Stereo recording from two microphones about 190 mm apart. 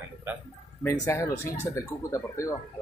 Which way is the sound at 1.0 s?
15° left (ahead or behind).